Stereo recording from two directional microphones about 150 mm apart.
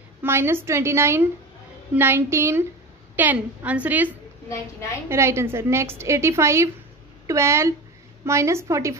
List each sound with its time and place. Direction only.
0.2 s a woman's voice: 15° right (ahead or behind)